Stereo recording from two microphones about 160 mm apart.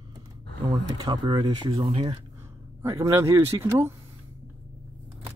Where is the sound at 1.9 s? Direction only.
40° right (ahead or behind).